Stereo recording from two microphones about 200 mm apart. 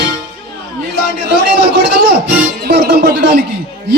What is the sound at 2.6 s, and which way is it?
Music, 50° right (ahead or behind).